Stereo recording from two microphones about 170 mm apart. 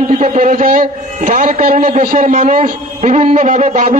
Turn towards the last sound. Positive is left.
turn(degrees=-50)  # may be behind; listen again after turning